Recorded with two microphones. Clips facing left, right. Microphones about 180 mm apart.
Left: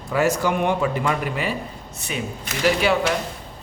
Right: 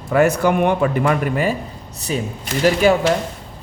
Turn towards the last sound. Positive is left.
turn(degrees=-45)  # may be behind; listen again after turning